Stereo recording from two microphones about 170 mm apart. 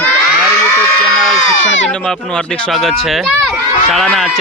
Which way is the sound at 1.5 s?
90° left.